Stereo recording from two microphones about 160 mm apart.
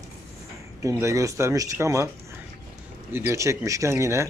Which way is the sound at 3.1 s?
20° right (ahead or behind).